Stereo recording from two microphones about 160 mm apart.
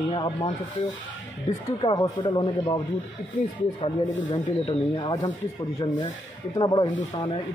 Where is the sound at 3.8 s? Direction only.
45° left (ahead or behind).